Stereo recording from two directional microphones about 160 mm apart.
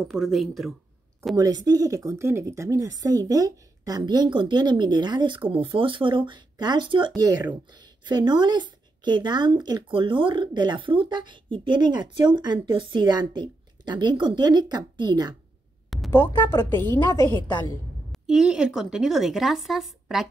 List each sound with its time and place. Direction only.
0.1 s speech: centre (ahead or behind)
1.3 s speech: 20° right (ahead or behind)
16.1 s a woman's voice: 15° left (ahead or behind)
18.1 s speech: 5° right (ahead or behind)